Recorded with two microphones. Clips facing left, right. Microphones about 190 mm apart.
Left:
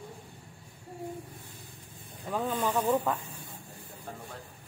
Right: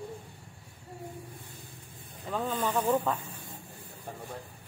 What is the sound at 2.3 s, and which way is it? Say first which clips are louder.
Speech: left 1 dB; 10° left (ahead or behind).